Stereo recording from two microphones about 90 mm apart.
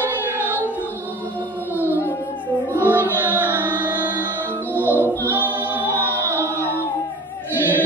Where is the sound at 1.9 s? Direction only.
25° left (ahead or behind).